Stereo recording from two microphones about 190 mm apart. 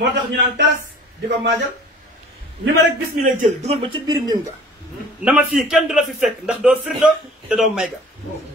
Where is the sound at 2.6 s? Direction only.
60° right (ahead or behind).